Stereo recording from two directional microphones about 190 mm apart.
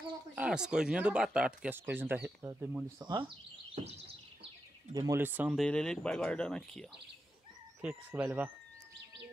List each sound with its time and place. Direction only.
0.4 s speech: 5° right (ahead or behind)
3.0 s speech: 25° right (ahead or behind)
4.9 s speech: 15° right (ahead or behind)
5.7 s speech: 5° left (ahead or behind)